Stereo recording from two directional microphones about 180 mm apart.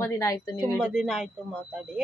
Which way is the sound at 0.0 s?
15° left (ahead or behind).